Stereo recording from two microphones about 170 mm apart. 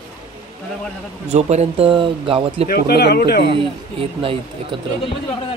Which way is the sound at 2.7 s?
70° left (ahead or behind).